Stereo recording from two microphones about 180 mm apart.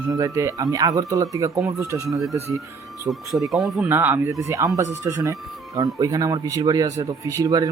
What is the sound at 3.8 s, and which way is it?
Speech, 10° right (ahead or behind).